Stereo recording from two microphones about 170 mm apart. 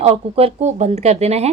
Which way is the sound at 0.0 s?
35° right (ahead or behind).